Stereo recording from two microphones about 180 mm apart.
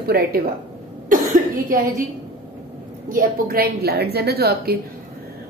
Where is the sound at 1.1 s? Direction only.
50° right (ahead or behind).